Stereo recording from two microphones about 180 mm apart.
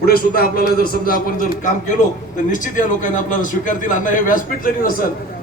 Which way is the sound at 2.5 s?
45° left (ahead or behind).